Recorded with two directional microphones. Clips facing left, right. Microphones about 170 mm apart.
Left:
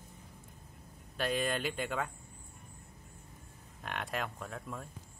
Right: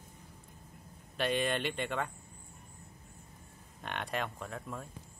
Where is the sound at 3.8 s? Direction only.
Centre (ahead or behind).